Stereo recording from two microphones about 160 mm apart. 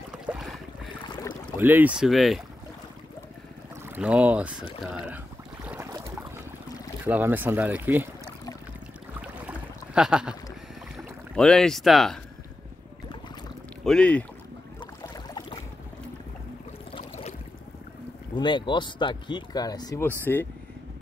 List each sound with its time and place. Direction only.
0.1 s boat: 5° right (ahead or behind)
1.6 s speech: 10° right (ahead or behind)
3.9 s speech: 10° right (ahead or behind)
5.7 s boat: 15° right (ahead or behind)
7.1 s speech: 10° right (ahead or behind)
9.2 s boat: 5° right (ahead or behind)
11.3 s speech: 5° left (ahead or behind)
13.8 s speech: 5° left (ahead or behind)
16.9 s a sound: 40° left (ahead or behind)
18.3 s speech: 30° left (ahead or behind)
20.1 s speech: 10° left (ahead or behind)